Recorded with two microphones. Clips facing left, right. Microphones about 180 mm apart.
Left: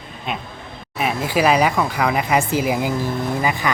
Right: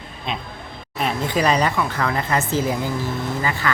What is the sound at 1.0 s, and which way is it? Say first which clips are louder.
Speech: left 2 dB; 5° left (ahead or behind).